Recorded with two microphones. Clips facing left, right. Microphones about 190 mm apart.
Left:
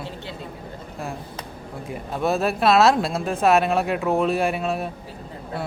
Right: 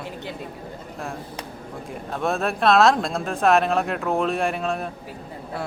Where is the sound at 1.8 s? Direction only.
5° left (ahead or behind).